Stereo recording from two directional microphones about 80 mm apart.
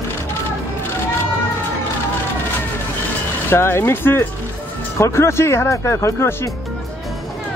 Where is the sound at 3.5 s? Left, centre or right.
Left.